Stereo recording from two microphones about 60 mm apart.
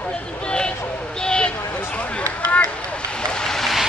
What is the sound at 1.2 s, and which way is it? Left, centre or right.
Vehicle, centre.